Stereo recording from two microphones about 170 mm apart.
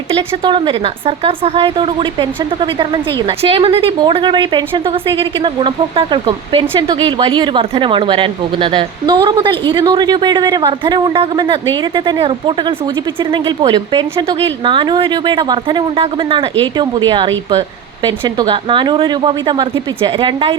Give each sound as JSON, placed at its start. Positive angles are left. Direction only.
{"t": 0.1, "sound": "speech", "side_deg": -30}